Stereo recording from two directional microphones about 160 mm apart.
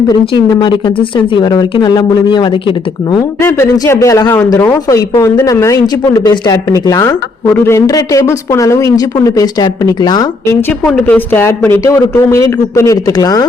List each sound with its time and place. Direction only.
0.6 s speech: 30° left (ahead or behind)
3.4 s speech: 15° left (ahead or behind)
11.0 s speech: 10° left (ahead or behind)